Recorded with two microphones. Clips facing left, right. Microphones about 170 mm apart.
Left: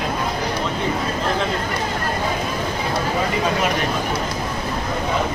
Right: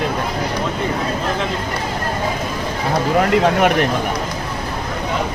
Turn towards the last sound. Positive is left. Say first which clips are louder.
# right 6 dB
turn(degrees=-65)  # may be behind; listen again after turning